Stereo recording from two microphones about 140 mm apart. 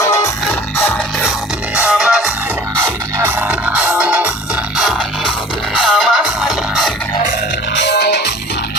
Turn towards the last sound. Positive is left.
turn(degrees=0)  # may be behind; listen again after turning